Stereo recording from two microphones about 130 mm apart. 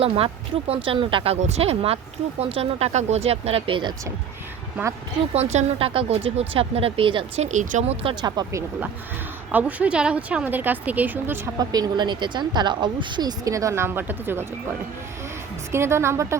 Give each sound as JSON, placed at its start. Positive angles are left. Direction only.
{"t": 0.7, "sound": "speech", "side_deg": -45}
{"t": 5.3, "sound": "speech", "side_deg": -55}
{"t": 7.4, "sound": "speech", "side_deg": -75}
{"t": 8.0, "sound": "speech", "side_deg": -35}
{"t": 9.5, "sound": "speech", "side_deg": -10}
{"t": 11.6, "sound": "speech", "side_deg": -30}
{"t": 15.7, "sound": "a woman's voice", "side_deg": -20}